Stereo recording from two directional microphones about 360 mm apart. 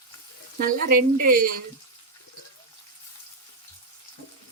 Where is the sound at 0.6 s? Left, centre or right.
Right.